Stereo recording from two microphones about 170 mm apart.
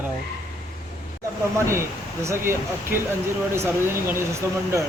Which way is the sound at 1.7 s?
15° right (ahead or behind).